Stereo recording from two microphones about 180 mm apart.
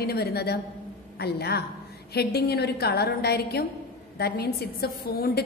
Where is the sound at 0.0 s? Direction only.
60° left (ahead or behind).